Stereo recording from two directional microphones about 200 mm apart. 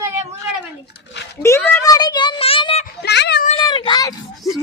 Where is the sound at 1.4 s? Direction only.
10° left (ahead or behind); by 2.8 s 25° left (ahead or behind).